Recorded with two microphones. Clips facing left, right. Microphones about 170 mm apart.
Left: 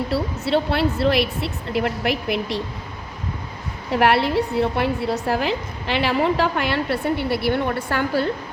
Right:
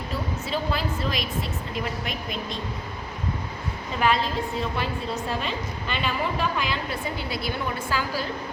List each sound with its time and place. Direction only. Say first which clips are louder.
0.1 s a woman's voice: left 6 dB; 70° left (ahead or behind)
3.9 s a woman's voice: left 7 dB; 70° left (ahead or behind)